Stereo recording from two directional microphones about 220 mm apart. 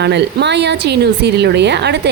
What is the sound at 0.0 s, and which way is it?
A woman's voice, 50° right (ahead or behind).